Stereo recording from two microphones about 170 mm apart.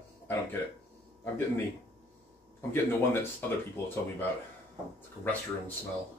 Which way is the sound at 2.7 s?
15° left (ahead or behind).